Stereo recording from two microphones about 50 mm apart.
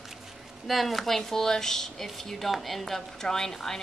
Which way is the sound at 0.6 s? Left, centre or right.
Centre.